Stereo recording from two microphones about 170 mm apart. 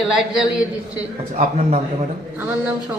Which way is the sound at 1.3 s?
40° right (ahead or behind).